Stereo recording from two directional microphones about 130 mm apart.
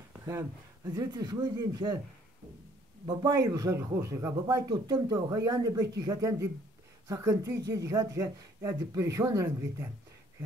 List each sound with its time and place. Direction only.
0.2 s speech: 20° right (ahead or behind)
0.8 s speech: 35° right (ahead or behind)
3.1 s speech: 25° right (ahead or behind)